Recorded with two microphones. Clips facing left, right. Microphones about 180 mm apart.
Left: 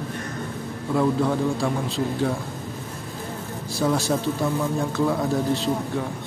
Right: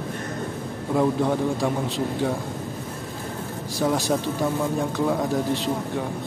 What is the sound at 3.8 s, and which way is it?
A man's voice, 15° right (ahead or behind).